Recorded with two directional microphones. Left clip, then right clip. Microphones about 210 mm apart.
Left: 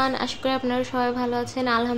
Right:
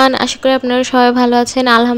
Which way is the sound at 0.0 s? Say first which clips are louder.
Right 13 dB; 35° right (ahead or behind).